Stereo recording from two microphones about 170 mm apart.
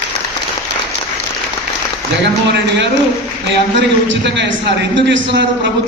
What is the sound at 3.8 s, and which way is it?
A man's voice, 90° right.